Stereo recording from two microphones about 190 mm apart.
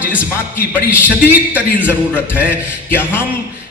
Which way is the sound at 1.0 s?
10° right (ahead or behind).